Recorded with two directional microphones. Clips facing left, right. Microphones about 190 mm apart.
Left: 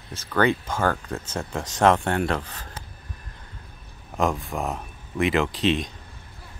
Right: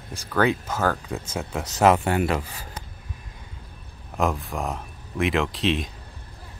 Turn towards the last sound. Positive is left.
turn(degrees=0)  # may be behind; listen again after turning